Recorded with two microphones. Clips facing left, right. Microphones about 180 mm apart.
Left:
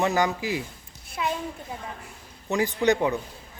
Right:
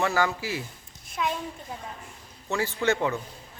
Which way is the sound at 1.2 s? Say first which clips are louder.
Left 1 dB; 5° left (ahead or behind).